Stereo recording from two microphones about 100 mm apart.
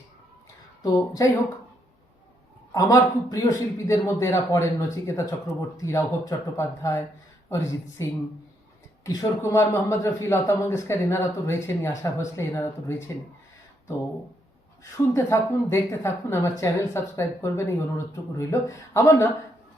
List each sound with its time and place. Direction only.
0.8 s a man's voice: 35° left (ahead or behind)
2.7 s a man's voice: 40° left (ahead or behind)
9.4 s a woman's voice: 25° left (ahead or behind)
14.9 s a woman's voice: 30° left (ahead or behind)